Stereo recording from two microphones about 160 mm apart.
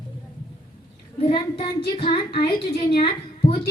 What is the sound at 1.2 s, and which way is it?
Speech, 35° left (ahead or behind).